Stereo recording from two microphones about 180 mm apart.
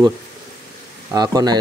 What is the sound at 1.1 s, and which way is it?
Speech, 20° right (ahead or behind).